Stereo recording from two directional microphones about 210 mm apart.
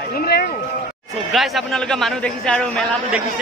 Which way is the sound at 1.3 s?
Centre (ahead or behind).